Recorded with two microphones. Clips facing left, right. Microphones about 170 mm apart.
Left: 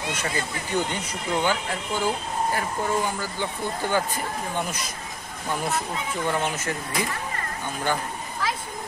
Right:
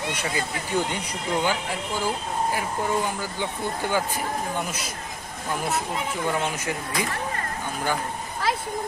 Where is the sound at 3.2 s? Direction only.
15° right (ahead or behind).